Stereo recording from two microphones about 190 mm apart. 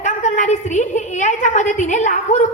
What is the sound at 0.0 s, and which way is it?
A woman's voice, 40° left (ahead or behind).